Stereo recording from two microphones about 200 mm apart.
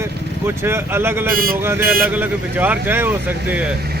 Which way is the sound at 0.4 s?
10° right (ahead or behind).